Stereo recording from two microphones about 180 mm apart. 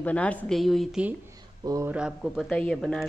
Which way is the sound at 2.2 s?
5° left (ahead or behind).